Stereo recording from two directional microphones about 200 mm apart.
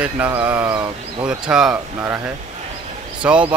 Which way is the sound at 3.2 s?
5° right (ahead or behind).